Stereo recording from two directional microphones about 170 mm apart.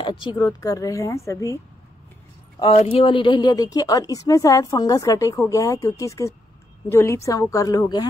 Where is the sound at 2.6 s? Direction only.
40° left (ahead or behind).